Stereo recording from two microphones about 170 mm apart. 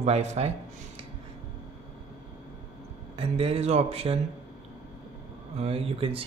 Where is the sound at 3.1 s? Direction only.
35° right (ahead or behind).